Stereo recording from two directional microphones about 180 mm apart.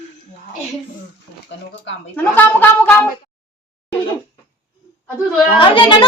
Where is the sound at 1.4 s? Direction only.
80° left.